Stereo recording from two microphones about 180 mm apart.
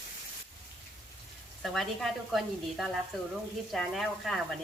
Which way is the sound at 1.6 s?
Centre (ahead or behind).